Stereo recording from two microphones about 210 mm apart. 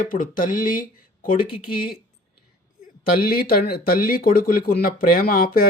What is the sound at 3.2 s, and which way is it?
Speech, 45° left (ahead or behind).